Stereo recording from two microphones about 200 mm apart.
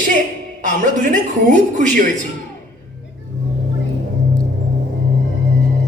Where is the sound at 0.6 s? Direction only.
40° right (ahead or behind).